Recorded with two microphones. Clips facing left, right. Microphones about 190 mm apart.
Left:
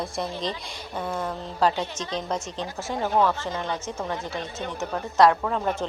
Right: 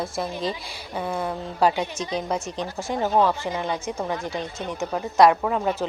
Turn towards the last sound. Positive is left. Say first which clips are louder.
# right 2 dB
turn(degrees=-10)  # may be behind; listen again after turning